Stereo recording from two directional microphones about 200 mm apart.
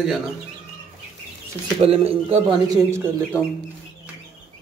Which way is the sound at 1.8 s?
30° right (ahead or behind).